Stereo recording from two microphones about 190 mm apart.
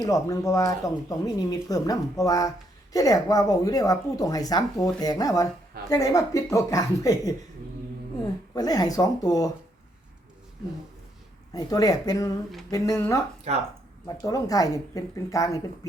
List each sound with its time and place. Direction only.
0.0 s speech: 15° left (ahead or behind)
8.5 s speech: 20° left (ahead or behind)
11.5 s speech: 20° left (ahead or behind)
13.5 s speech: 35° right (ahead or behind)
14.2 s speech: 20° left (ahead or behind)